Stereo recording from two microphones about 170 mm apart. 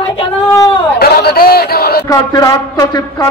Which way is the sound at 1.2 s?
65° left (ahead or behind).